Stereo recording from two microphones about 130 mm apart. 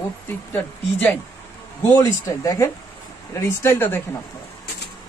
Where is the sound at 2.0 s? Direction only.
25° left (ahead or behind).